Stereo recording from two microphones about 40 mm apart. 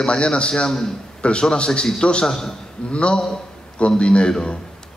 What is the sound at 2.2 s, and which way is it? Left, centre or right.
Speech, centre.